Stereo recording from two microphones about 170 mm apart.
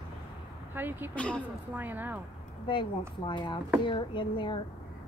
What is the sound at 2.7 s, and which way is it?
Speech, 30° left (ahead or behind).